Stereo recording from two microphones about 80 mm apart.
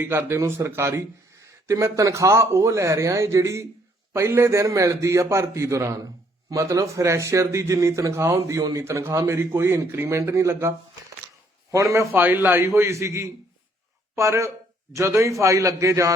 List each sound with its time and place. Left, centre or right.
0.0 s speech: right
11.7 s speech: right
12.1 s speech: right